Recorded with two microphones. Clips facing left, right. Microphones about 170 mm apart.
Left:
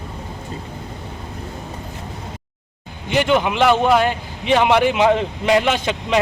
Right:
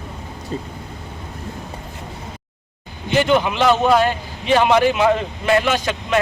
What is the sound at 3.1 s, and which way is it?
A man's voice, 15° left (ahead or behind).